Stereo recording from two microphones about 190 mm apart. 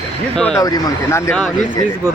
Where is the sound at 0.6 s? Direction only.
20° left (ahead or behind).